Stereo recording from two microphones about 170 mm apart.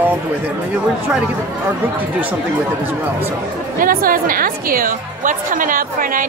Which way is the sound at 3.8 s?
55° right (ahead or behind).